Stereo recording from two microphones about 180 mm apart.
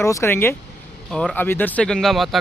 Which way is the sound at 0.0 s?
15° left (ahead or behind).